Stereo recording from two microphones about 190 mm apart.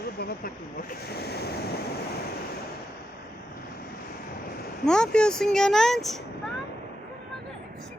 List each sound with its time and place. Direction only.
0.2 s speech: 50° left (ahead or behind)
1.1 s waves: 60° left (ahead or behind)
4.9 s speech: 5° left (ahead or behind)